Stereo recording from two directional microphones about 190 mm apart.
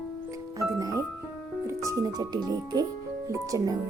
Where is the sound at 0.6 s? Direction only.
15° right (ahead or behind).